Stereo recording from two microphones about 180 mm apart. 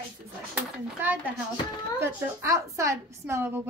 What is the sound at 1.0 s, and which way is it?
A woman's voice, 10° right (ahead or behind).